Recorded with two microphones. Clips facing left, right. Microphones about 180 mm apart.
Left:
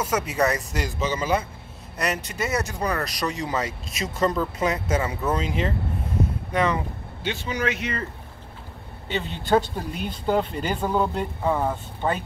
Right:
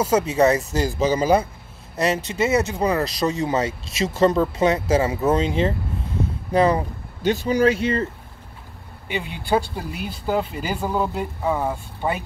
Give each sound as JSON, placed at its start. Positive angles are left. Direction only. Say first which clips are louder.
{"t": 0.0, "sound": "speech", "louder": "right 6 dB", "side_deg": -30}
{"t": 9.0, "sound": "speech", "louder": "even", "side_deg": -10}